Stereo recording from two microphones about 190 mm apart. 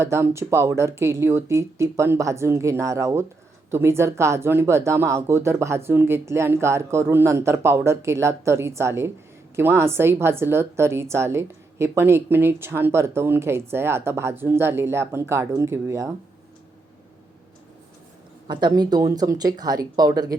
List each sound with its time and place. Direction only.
0.0 s a woman's voice: 15° right (ahead or behind)
18.4 s speech: 20° right (ahead or behind)